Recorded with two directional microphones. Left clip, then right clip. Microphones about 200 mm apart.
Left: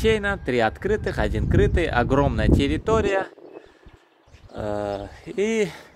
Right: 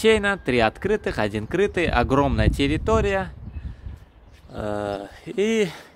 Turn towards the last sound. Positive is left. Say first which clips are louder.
# right 1 dB
turn(degrees=-20)  # may be behind; listen again after turning